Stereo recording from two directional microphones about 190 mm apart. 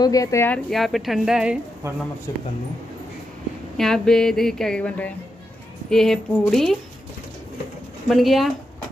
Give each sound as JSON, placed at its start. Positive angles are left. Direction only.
{"t": 0.0, "sound": "speech", "side_deg": 20}
{"t": 0.7, "sound": "speech", "side_deg": 0}
{"t": 3.7, "sound": "speech", "side_deg": 0}
{"t": 8.1, "sound": "speech", "side_deg": 0}